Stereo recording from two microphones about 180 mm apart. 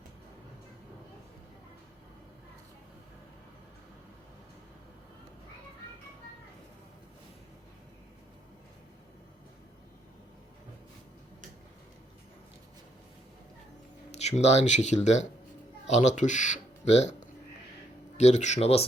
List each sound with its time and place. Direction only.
14.1 s speech: 35° left (ahead or behind)
18.2 s speech: 40° left (ahead or behind)